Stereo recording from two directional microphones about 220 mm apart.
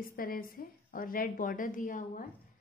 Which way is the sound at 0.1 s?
40° left (ahead or behind).